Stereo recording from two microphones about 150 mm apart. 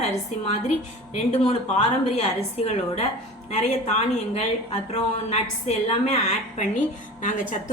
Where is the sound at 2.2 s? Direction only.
45° left (ahead or behind).